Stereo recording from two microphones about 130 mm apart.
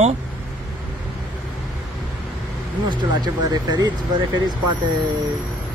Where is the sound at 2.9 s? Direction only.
35° right (ahead or behind).